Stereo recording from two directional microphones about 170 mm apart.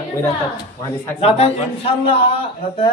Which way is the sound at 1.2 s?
35° left (ahead or behind).